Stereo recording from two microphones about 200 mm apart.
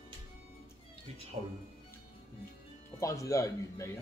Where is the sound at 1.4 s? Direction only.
30° right (ahead or behind).